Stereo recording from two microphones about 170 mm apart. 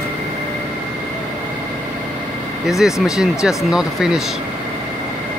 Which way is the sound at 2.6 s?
Centre (ahead or behind).